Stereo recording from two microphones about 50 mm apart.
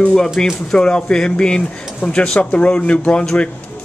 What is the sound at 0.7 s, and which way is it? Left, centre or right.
Speech, centre.